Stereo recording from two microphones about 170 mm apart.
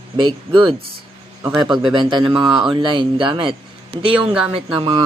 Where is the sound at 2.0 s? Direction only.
30° right (ahead or behind).